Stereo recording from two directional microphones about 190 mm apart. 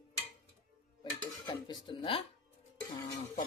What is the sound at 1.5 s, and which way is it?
Speech, 20° left (ahead or behind).